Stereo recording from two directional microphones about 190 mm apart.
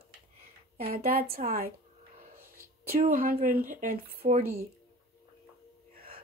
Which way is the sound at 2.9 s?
50° right (ahead or behind).